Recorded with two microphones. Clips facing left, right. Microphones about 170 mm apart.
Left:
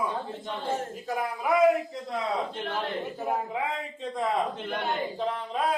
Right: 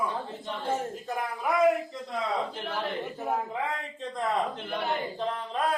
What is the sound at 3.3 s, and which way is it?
Speech, 10° left (ahead or behind).